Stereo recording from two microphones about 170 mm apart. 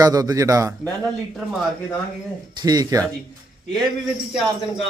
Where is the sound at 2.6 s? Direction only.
25° right (ahead or behind).